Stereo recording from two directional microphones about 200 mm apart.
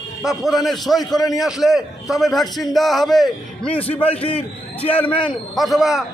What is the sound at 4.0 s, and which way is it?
A man's voice, 30° left (ahead or behind).